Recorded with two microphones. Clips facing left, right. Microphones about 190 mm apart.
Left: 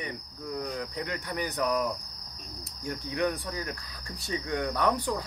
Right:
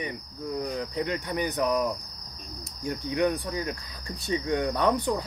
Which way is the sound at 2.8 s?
20° right (ahead or behind).